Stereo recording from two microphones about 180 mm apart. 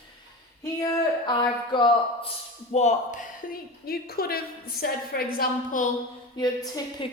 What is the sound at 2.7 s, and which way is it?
A woman's voice, 40° left (ahead or behind).